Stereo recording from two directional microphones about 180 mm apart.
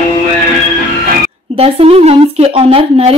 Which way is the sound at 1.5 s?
35° right (ahead or behind).